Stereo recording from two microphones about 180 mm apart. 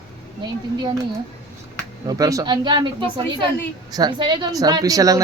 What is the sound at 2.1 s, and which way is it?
Speech, 20° right (ahead or behind).